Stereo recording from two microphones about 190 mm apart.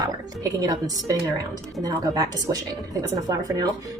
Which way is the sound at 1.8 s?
20° right (ahead or behind).